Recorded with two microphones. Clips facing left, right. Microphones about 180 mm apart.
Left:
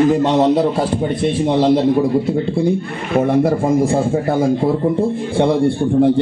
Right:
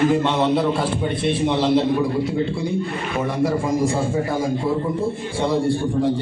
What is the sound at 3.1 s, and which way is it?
A man's voice, 55° left (ahead or behind).